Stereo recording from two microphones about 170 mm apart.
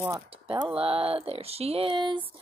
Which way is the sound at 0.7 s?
35° right (ahead or behind).